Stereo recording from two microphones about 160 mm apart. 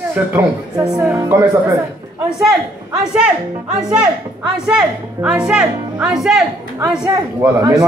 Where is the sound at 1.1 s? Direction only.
20° right (ahead or behind).